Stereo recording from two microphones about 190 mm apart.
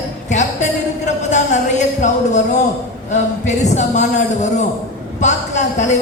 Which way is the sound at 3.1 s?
40° left (ahead or behind).